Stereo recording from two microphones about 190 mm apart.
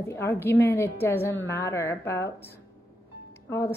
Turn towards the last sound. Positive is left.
turn(degrees=15)  # may be behind; listen again after turning